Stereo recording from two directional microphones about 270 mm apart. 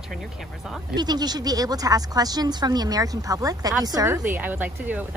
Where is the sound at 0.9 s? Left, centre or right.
Centre.